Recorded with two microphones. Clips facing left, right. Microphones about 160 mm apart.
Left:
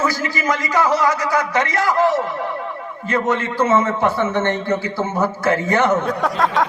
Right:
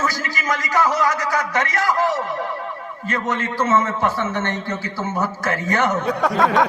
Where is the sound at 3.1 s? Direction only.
20° left (ahead or behind).